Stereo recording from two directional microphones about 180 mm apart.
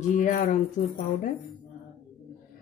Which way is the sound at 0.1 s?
45° left (ahead or behind).